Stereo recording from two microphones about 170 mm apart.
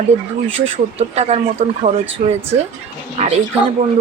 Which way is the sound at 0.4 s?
35° right (ahead or behind).